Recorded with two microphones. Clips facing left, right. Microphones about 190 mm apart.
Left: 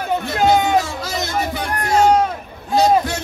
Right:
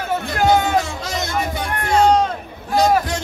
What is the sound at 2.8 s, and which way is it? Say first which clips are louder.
Music: left 1 dB; 25° left (ahead or behind).